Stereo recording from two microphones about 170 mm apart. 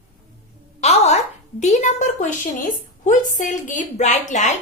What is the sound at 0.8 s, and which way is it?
A woman's voice, 40° left (ahead or behind).